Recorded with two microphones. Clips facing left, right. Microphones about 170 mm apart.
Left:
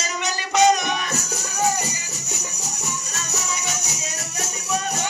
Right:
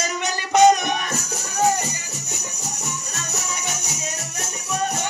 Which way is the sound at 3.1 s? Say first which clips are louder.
Left 1 dB; 55° right (ahead or behind).